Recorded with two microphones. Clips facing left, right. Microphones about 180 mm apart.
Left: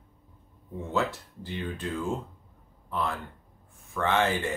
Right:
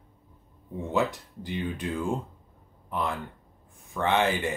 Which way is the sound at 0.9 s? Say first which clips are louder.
Right 2 dB; 15° right (ahead or behind).